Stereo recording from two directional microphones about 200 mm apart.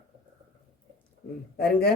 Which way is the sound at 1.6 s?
50° left (ahead or behind).